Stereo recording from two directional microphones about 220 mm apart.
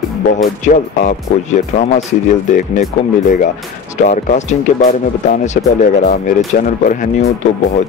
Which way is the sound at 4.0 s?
35° left (ahead or behind).